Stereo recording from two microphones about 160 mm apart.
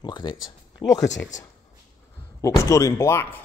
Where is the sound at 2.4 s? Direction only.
20° left (ahead or behind).